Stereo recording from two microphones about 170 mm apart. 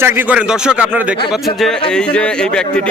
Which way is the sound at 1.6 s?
5° left (ahead or behind).